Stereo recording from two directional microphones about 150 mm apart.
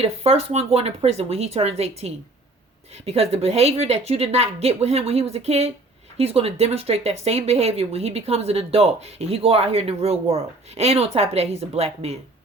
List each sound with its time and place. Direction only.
0.0 s speech: 40° right (ahead or behind)